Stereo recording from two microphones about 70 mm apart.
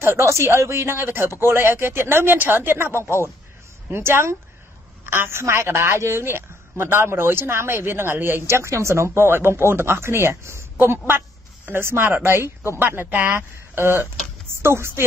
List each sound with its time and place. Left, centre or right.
0.0 s a woman's voice: right